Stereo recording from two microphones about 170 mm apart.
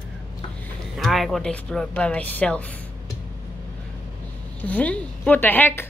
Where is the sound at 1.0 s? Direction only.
Centre (ahead or behind).